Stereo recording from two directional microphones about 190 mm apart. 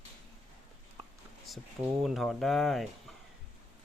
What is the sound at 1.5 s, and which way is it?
Speech, centre (ahead or behind).